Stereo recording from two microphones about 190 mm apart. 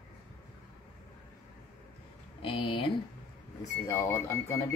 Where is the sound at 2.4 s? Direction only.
25° left (ahead or behind).